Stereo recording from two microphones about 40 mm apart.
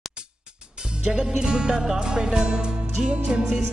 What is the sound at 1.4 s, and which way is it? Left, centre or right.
Music, centre.